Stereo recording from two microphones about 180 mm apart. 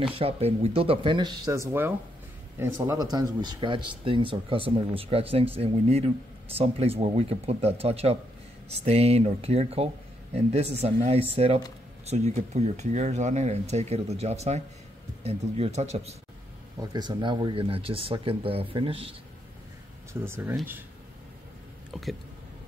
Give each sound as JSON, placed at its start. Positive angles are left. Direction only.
{"t": 0.0, "sound": "speech", "side_deg": -30}
{"t": 16.9, "sound": "speech", "side_deg": -25}
{"t": 20.1, "sound": "speech", "side_deg": -15}
{"t": 21.9, "sound": "speech", "side_deg": 0}